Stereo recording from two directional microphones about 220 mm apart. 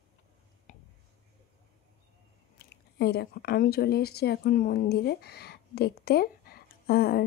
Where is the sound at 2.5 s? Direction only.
45° left (ahead or behind).